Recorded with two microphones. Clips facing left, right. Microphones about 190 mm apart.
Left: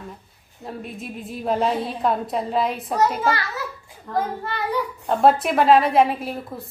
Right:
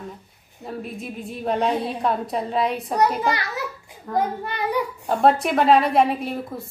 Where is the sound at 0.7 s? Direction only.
Centre (ahead or behind).